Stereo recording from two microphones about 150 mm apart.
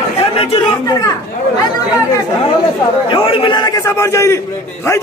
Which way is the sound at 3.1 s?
35° left (ahead or behind).